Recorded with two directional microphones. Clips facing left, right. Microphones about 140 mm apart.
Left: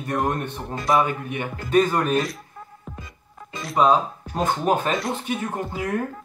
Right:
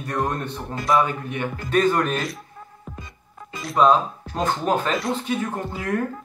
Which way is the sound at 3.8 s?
10° left (ahead or behind).